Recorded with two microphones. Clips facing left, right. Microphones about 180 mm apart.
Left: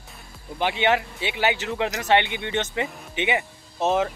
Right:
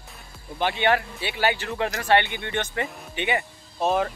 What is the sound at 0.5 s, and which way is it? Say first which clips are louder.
Speech: even; 15° left (ahead or behind).